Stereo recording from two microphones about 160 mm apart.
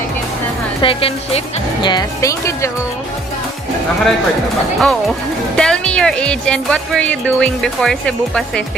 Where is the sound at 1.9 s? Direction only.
20° left (ahead or behind).